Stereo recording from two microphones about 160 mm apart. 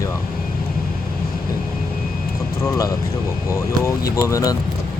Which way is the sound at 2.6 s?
20° left (ahead or behind).